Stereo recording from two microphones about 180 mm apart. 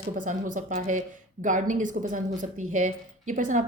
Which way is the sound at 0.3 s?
45° right (ahead or behind).